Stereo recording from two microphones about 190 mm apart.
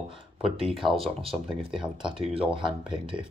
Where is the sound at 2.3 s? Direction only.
25° right (ahead or behind).